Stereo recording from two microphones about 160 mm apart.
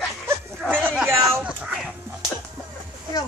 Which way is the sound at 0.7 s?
10° right (ahead or behind).